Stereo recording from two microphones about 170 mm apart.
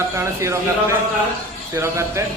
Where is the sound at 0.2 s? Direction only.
15° right (ahead or behind).